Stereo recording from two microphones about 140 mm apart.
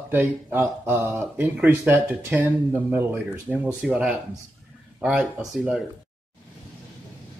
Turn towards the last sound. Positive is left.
turn(degrees=0)  # may be behind; listen again after turning